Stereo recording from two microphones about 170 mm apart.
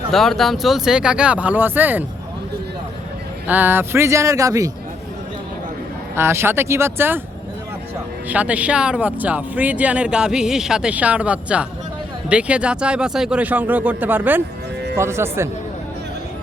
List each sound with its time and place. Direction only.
0.1 s speech: centre (ahead or behind)
3.4 s speech: 10° right (ahead or behind)
6.1 s speech: 15° right (ahead or behind)
8.3 s speech: 10° right (ahead or behind)